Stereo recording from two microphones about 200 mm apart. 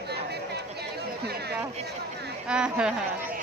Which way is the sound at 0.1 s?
55° right (ahead or behind).